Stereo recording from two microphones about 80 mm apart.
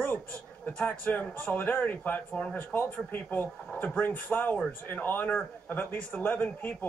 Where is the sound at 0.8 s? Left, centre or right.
Left.